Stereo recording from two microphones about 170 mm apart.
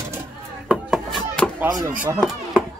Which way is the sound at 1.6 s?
20° right (ahead or behind).